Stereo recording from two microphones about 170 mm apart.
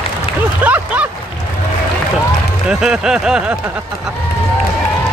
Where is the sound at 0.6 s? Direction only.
10° right (ahead or behind).